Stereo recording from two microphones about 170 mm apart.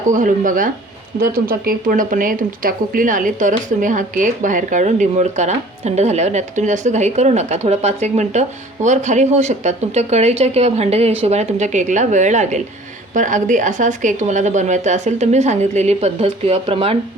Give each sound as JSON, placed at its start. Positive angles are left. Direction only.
{"t": 0.1, "sound": "speech", "side_deg": -50}